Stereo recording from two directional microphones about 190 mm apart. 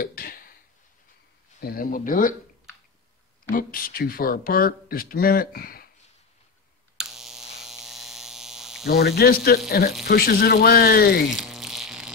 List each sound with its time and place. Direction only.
0.0 s a sound: 50° left (ahead or behind)
1.6 s speech: 50° left (ahead or behind)
3.5 s speech: 50° left (ahead or behind)
7.0 s hum: centre (ahead or behind)
8.8 s speech: 55° left (ahead or behind)
11.2 s a sound: centre (ahead or behind)